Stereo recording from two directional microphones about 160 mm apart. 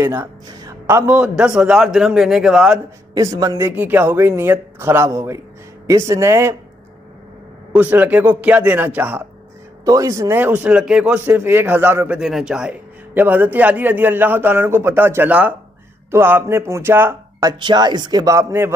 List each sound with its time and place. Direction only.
0.0 s a man's voice: 15° right (ahead or behind)
3.2 s a man's voice: 20° right (ahead or behind)
7.7 s a man's voice: 10° right (ahead or behind)
9.8 s a man's voice: 20° right (ahead or behind)
12.2 s a man's voice: 5° right (ahead or behind)